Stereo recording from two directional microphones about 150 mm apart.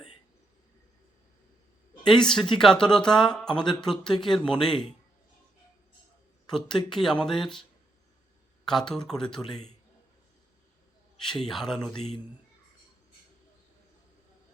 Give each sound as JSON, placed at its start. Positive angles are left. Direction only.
{"t": 2.2, "sound": "speech", "side_deg": 5}
{"t": 3.5, "sound": "speech", "side_deg": 30}
{"t": 3.8, "sound": "speech", "side_deg": 5}
{"t": 6.5, "sound": "speech", "side_deg": 5}
{"t": 8.9, "sound": "speech", "side_deg": 5}
{"t": 11.2, "sound": "speech", "side_deg": 5}